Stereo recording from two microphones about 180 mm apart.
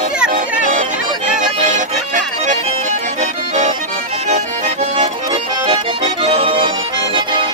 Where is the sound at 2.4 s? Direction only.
40° right (ahead or behind).